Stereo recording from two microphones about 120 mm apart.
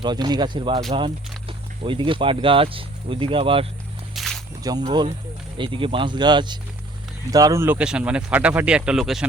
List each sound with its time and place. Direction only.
0.0 s speech: 35° right (ahead or behind)
4.1 s snake: centre (ahead or behind)
4.7 s speech: 30° right (ahead or behind)
5.5 s speech: 45° right (ahead or behind); by 7.8 s 20° right (ahead or behind)
7.8 s speech: 10° right (ahead or behind)